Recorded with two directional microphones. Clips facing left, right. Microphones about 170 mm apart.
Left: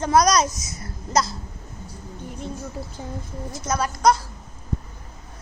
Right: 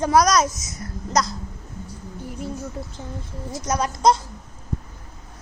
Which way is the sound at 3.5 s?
15° right (ahead or behind).